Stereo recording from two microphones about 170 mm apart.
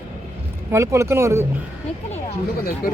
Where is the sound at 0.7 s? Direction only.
15° right (ahead or behind).